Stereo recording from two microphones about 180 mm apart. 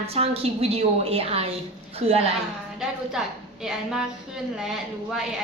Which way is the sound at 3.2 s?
5° right (ahead or behind).